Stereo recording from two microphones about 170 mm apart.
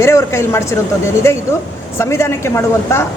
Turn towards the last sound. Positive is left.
turn(degrees=15)  # may be behind; listen again after turning